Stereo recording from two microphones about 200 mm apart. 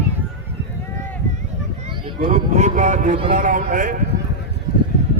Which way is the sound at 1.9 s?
30° right (ahead or behind).